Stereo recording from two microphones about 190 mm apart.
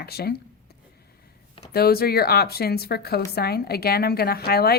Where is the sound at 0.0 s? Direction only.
55° left (ahead or behind).